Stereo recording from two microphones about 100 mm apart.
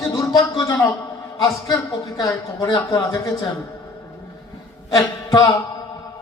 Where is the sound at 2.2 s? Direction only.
40° left (ahead or behind).